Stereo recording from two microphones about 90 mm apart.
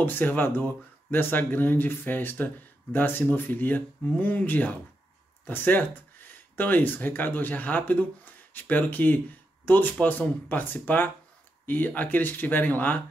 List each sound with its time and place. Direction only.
0.0 s speech: 20° left (ahead or behind)